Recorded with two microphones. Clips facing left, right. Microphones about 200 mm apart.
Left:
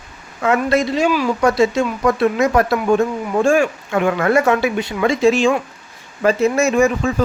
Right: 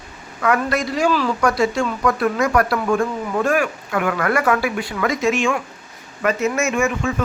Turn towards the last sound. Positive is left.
turn(degrees=35)  # may be behind; listen again after turning